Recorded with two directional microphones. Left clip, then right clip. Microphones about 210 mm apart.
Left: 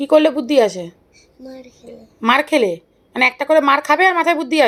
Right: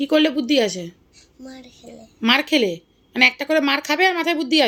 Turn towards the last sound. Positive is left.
turn(degrees=-35)  # may be behind; listen again after turning